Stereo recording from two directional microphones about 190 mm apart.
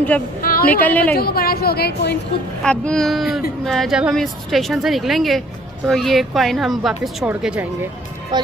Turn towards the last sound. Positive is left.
turn(degrees=0)  # may be behind; listen again after turning